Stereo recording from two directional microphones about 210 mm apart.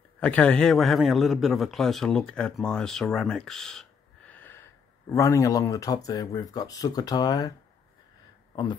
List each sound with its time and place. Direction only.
0.2 s a man's voice: 5° left (ahead or behind)
4.3 s wheeze: 10° left (ahead or behind)
5.1 s speech: 15° left (ahead or behind)